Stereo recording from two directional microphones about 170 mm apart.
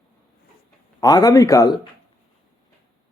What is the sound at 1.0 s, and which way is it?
Speech, 20° left (ahead or behind).